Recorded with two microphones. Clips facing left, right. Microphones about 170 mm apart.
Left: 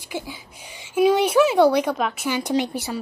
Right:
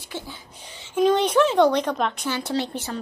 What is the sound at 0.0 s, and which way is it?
Speech, 10° left (ahead or behind).